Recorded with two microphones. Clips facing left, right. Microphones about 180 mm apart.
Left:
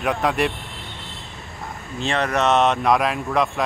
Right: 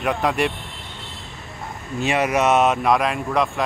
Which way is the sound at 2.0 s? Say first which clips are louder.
Right 2 dB; 10° right (ahead or behind).